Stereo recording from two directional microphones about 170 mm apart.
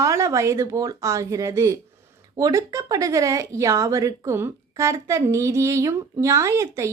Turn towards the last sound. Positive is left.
turn(degrees=-15)  # may be behind; listen again after turning